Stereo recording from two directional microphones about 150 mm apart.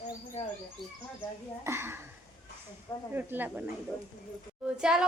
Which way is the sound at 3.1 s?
15° right (ahead or behind).